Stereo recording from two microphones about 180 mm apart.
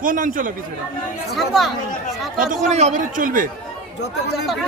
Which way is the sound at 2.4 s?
45° right (ahead or behind).